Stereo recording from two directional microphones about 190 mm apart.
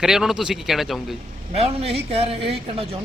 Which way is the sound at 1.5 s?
30° right (ahead or behind).